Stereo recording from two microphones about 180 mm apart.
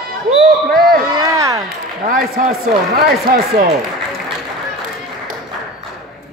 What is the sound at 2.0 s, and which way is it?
Speech, 50° right (ahead or behind).